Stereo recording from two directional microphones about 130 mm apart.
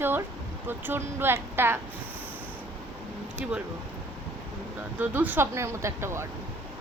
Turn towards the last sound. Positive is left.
turn(degrees=-20)  # may be behind; listen again after turning